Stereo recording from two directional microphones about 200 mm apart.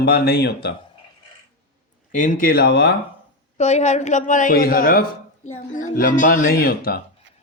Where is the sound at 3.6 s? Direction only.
35° left (ahead or behind).